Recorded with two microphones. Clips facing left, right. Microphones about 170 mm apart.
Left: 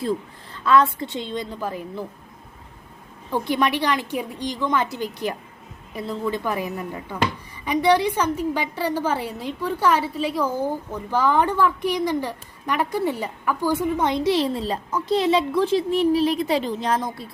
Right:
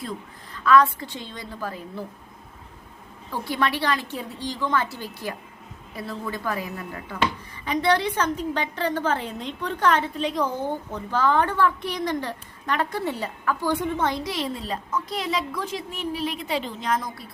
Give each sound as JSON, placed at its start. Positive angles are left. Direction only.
{"t": 0.0, "sound": "a woman's voice", "side_deg": 30}
{"t": 3.4, "sound": "a woman's voice", "side_deg": 15}
{"t": 14.3, "sound": "a woman's voice", "side_deg": 30}